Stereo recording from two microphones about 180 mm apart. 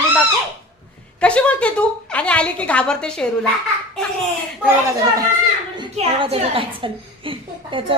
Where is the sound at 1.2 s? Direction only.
5° left (ahead or behind).